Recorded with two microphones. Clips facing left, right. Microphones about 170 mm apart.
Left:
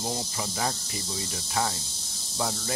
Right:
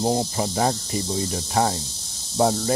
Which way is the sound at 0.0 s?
30° right (ahead or behind).